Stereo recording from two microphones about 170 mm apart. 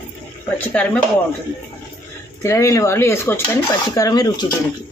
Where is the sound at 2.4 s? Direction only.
15° left (ahead or behind).